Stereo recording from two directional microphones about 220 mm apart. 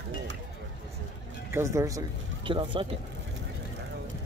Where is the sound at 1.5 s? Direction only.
10° right (ahead or behind).